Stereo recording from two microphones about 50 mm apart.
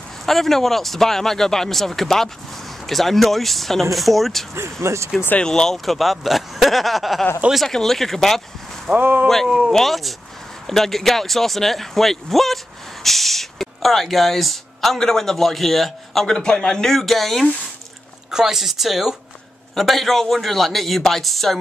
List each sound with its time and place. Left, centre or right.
0.2 s speech: centre
4.8 s speech: right
5.4 s speech: centre
5.9 s speech: centre
8.9 s speech: right
9.7 s speech: centre
16.3 s speech: centre
18.3 s speech: centre